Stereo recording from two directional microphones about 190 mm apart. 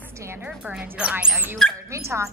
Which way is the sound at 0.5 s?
5° right (ahead or behind).